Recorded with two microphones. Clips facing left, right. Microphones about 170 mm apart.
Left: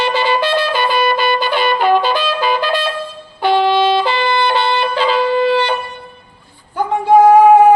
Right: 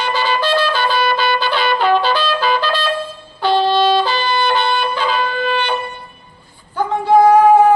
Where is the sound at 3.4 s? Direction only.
15° left (ahead or behind).